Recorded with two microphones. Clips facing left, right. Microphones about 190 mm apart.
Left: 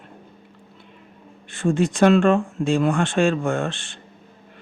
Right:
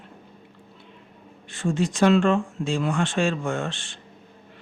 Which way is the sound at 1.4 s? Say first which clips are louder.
Left 4 dB; 55° left (ahead or behind).